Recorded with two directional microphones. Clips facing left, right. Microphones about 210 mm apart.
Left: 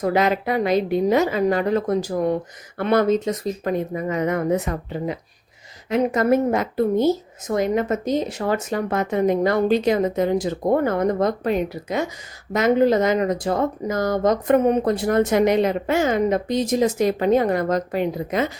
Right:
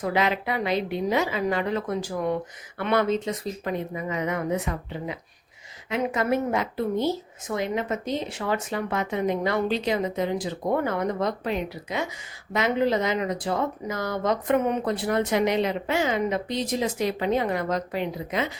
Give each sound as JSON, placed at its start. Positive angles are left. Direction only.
{"t": 0.0, "sound": "speech", "side_deg": 45}